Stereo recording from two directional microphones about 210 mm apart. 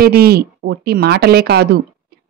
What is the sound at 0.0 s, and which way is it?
Speech, 45° right (ahead or behind).